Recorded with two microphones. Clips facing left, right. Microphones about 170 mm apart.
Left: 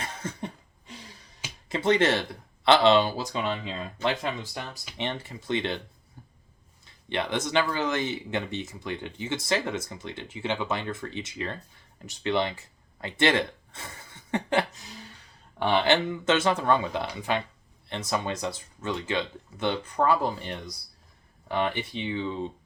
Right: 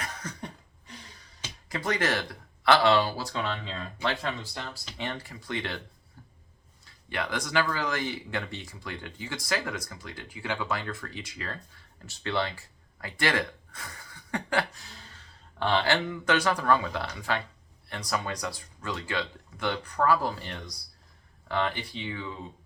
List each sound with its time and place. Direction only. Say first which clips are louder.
0.0 s cough: left 3 dB; 25° left (ahead or behind)
1.7 s speech: left 6 dB; 25° left (ahead or behind)
6.2 s a sound: left 2 dB; 20° left (ahead or behind)
6.8 s speech: left 3 dB; 25° left (ahead or behind)